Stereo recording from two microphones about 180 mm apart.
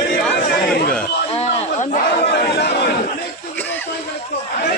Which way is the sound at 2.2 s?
65° left (ahead or behind).